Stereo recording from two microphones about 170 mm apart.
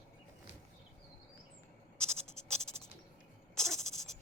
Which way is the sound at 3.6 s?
Centre (ahead or behind).